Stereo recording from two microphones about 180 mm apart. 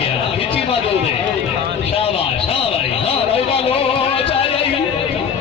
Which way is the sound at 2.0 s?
30° left (ahead or behind).